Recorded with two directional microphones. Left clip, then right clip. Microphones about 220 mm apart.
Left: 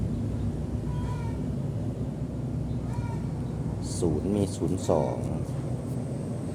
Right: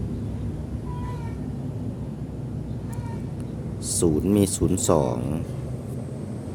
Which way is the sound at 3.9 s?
35° right (ahead or behind).